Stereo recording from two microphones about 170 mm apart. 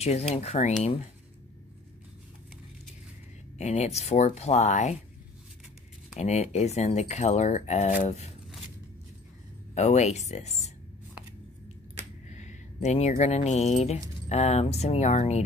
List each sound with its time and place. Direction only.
0.0 s speech: 40° left (ahead or behind)
3.5 s speech: 40° left (ahead or behind)
6.1 s speech: 40° left (ahead or behind)
9.8 s speech: 40° left (ahead or behind)
12.3 s a sound: 45° left (ahead or behind)
13.1 s speech: 40° left (ahead or behind)